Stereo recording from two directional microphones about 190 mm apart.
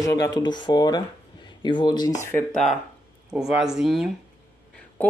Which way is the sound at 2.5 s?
Centre (ahead or behind).